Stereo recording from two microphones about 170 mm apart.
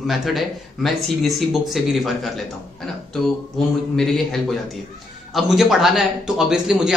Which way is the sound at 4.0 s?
Centre (ahead or behind).